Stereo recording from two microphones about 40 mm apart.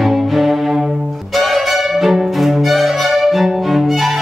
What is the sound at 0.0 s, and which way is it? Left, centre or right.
Music, centre.